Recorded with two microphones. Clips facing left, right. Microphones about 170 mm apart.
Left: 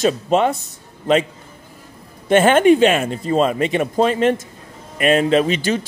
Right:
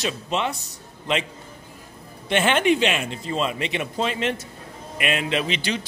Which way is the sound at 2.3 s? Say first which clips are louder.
Left 8 dB; 45° left (ahead or behind).